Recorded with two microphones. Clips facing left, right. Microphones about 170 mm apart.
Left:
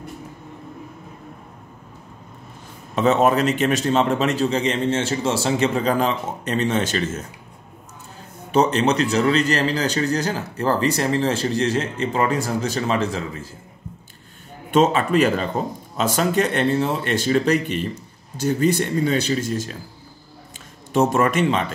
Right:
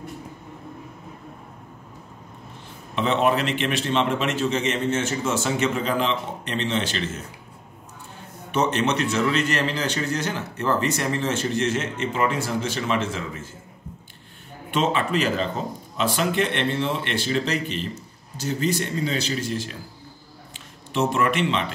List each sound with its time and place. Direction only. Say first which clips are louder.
3.0 s a man's voice: left 4 dB; 40° left (ahead or behind)
8.5 s a man's voice: left 5 dB; 35° left (ahead or behind)
14.7 s a man's voice: left 6 dB; 45° left (ahead or behind)